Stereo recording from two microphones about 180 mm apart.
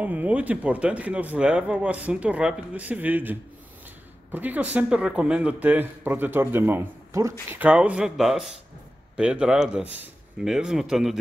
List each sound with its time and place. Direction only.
0.0 s speech: 10° right (ahead or behind)